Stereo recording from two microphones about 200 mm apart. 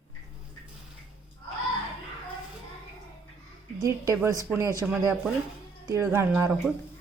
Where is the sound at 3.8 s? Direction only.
15° right (ahead or behind).